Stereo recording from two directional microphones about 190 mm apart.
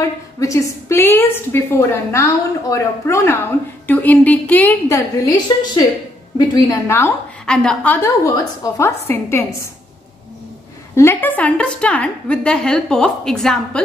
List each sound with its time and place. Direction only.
0.4 s a woman's voice: 15° left (ahead or behind)
7.4 s a woman's voice: 5° left (ahead or behind)
11.0 s a woman's voice: 10° left (ahead or behind)